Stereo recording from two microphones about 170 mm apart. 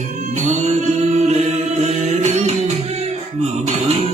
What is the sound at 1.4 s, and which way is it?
Chant, 40° right (ahead or behind).